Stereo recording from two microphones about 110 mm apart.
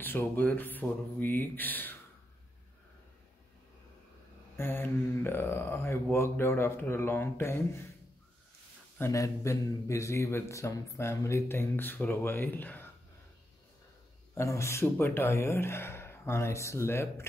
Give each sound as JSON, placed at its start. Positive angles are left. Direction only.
{"t": 0.0, "sound": "speech", "side_deg": 20}
{"t": 4.6, "sound": "a man's voice", "side_deg": 20}
{"t": 9.1, "sound": "a man's voice", "side_deg": 30}
{"t": 14.3, "sound": "a man's voice", "side_deg": 25}